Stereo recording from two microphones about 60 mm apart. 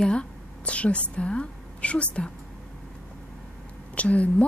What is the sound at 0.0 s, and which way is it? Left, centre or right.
A woman's voice, centre.